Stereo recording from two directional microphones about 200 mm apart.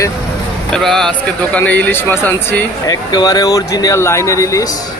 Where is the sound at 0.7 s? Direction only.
Centre (ahead or behind).